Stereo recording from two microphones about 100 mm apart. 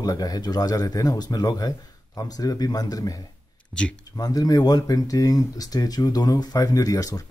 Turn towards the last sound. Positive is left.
turn(degrees=35)  # may be behind; listen again after turning